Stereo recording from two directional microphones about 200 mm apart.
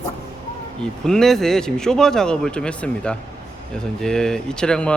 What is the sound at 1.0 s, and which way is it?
A man's voice, 5° left (ahead or behind).